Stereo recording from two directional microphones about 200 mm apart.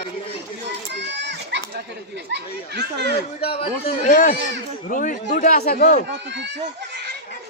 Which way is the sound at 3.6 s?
30° left (ahead or behind).